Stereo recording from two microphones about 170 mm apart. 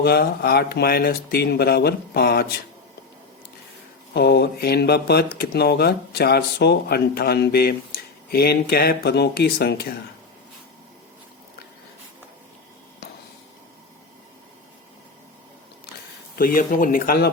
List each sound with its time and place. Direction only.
0.0 s speech: 70° left (ahead or behind)
4.1 s speech: 75° left (ahead or behind)
16.3 s speech: 55° left (ahead or behind)